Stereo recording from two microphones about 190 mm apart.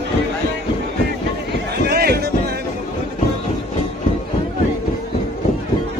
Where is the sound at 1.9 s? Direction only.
55° right (ahead or behind).